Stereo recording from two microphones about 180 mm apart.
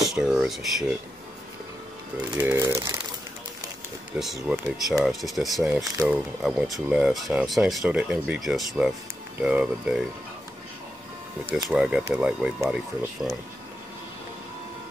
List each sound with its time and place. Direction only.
0.0 s speech: 5° right (ahead or behind)
2.3 s speech: 15° right (ahead or behind)
4.5 s speech: 5° right (ahead or behind)
11.5 s speech: 5° right (ahead or behind)